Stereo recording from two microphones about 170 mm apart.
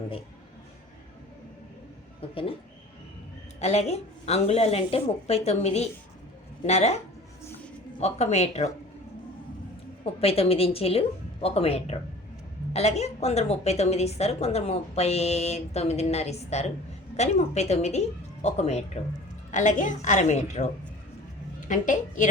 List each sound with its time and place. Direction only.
2.3 s a woman's voice: 35° left (ahead or behind)
3.6 s a woman's voice: 40° left (ahead or behind)
10.0 s a woman's voice: 35° left (ahead or behind)
21.7 s a woman's voice: 50° left (ahead or behind)